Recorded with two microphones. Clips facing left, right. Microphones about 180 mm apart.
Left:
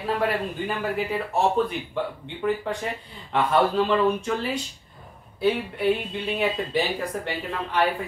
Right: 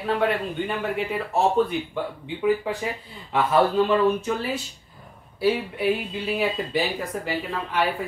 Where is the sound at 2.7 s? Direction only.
5° right (ahead or behind).